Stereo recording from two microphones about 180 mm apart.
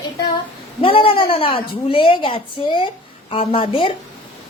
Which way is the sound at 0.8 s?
30° left (ahead or behind).